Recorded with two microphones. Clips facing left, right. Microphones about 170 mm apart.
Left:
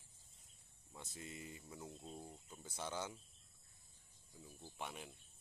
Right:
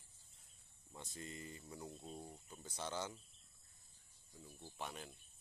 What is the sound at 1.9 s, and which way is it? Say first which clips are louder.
Speech: right 1 dB; 15° right (ahead or behind).